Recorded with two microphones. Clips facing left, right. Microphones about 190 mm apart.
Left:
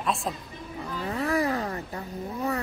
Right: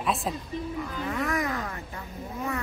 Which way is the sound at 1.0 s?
35° left (ahead or behind).